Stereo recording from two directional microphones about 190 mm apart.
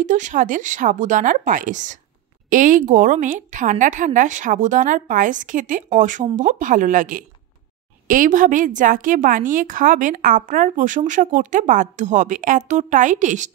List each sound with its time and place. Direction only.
0.0 s a woman's voice: 40° right (ahead or behind)